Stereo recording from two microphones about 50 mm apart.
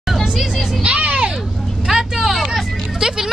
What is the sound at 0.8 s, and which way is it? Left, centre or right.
Vehicle, right.